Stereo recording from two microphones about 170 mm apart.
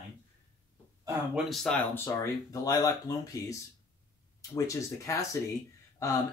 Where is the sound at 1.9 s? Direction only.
15° left (ahead or behind).